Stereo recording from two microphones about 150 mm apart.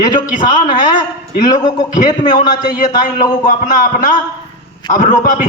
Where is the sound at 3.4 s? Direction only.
60° left (ahead or behind).